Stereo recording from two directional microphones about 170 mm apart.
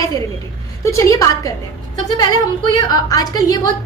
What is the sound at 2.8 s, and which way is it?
Speech, 20° left (ahead or behind).